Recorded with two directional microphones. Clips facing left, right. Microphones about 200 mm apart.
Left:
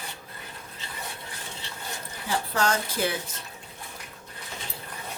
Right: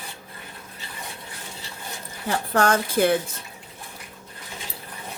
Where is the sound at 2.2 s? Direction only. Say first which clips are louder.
Right 5 dB; 55° right (ahead or behind).